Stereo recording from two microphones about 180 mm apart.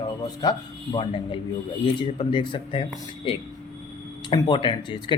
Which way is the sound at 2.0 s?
25° left (ahead or behind).